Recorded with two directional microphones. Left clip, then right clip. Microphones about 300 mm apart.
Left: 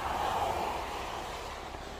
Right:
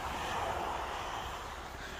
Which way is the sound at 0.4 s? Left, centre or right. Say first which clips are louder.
Left 3 dB; left.